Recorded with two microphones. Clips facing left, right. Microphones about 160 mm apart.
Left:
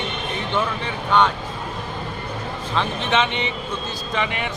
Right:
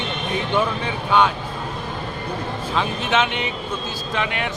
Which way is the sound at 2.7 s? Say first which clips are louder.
Even; 5° right (ahead or behind).